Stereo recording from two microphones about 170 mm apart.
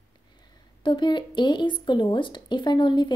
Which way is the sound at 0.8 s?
30° left (ahead or behind).